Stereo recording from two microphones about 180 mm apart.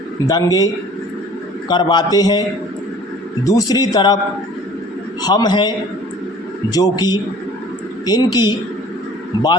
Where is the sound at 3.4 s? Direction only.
20° left (ahead or behind).